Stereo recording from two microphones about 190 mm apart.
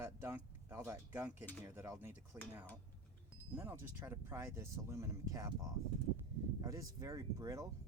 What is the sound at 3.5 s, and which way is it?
Speech, 10° right (ahead or behind).